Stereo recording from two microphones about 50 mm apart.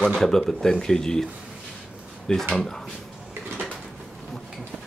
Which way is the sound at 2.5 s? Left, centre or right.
Centre.